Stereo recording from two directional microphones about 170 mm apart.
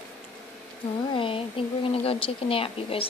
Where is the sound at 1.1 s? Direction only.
30° left (ahead or behind).